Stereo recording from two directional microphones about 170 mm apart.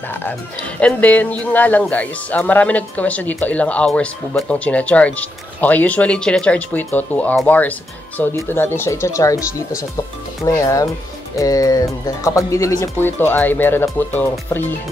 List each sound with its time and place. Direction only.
0.1 s speech: 10° left (ahead or behind)
9.4 s speech: 55° left (ahead or behind)
10.4 s speech: 20° left (ahead or behind)